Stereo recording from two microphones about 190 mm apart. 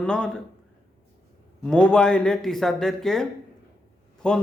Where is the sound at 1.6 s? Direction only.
5° left (ahead or behind).